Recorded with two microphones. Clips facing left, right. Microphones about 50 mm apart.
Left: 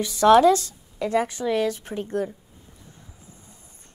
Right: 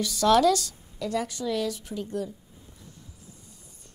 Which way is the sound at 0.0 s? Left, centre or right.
Left.